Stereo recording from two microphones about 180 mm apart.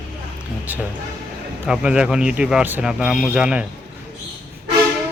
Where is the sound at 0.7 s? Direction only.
10° right (ahead or behind).